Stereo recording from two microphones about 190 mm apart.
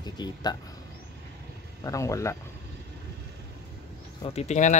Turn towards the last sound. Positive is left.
turn(degrees=40)  # may be behind; listen again after turning